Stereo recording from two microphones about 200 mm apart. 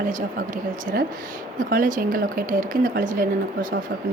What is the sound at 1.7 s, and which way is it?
A woman's voice, 40° right (ahead or behind).